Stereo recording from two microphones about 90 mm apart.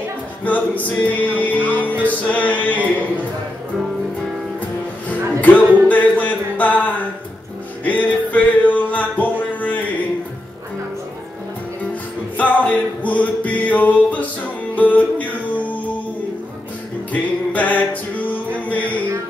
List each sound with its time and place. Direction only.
0.4 s music: 15° left (ahead or behind)
4.6 s music: 15° left (ahead or behind)
11.9 s music: 15° left (ahead or behind)
17.1 s music: 15° left (ahead or behind)